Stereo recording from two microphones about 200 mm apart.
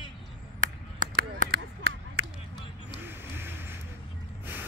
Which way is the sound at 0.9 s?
40° right (ahead or behind).